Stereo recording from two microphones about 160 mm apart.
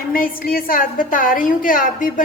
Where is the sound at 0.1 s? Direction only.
60° left (ahead or behind).